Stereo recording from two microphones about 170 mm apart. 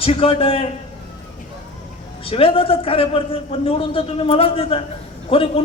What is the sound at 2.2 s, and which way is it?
A man's voice, 35° left (ahead or behind).